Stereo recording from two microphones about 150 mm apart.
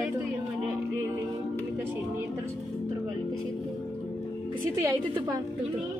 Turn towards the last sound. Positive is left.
turn(degrees=-25)  # may be behind; listen again after turning